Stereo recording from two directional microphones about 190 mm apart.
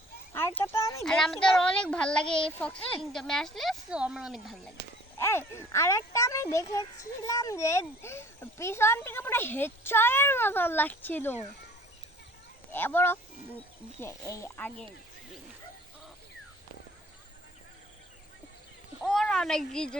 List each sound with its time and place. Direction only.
0.3 s a sound: 10° left (ahead or behind)
1.0 s a child's voice: centre (ahead or behind)
5.1 s a child's voice: 10° left (ahead or behind)
12.7 s a child's voice: 10° left (ahead or behind)
19.0 s speech: 5° left (ahead or behind)